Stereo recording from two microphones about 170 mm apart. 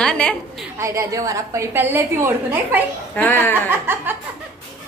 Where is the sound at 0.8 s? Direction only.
20° right (ahead or behind).